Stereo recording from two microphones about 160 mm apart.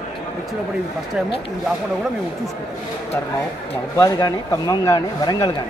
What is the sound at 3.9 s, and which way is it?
Speech, 20° left (ahead or behind).